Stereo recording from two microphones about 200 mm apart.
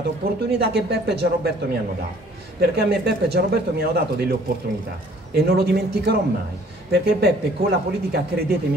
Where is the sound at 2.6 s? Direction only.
55° right (ahead or behind).